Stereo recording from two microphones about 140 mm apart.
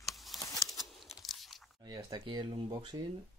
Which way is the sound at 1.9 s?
30° right (ahead or behind).